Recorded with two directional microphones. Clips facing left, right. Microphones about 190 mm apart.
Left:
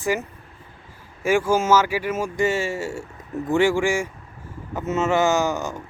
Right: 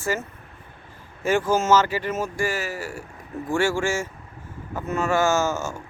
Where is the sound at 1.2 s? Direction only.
10° left (ahead or behind).